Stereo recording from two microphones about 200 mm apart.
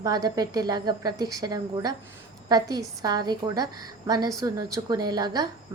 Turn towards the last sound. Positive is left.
turn(degrees=-20)  # may be behind; listen again after turning